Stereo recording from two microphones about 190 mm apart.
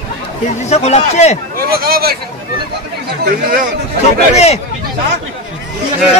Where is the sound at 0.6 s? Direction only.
35° left (ahead or behind).